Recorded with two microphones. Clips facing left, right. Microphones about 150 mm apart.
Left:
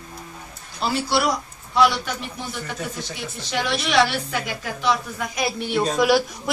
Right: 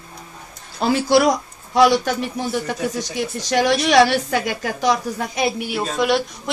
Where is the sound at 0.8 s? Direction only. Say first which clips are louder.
Right 6 dB; 45° right (ahead or behind).